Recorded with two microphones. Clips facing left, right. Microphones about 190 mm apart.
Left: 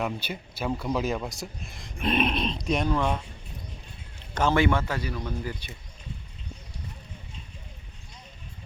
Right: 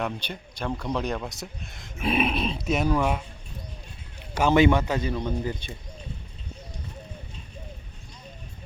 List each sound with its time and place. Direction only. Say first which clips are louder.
0.0 s speech: even; 5° left (ahead or behind)
4.4 s a man's voice: right 4 dB; 15° right (ahead or behind)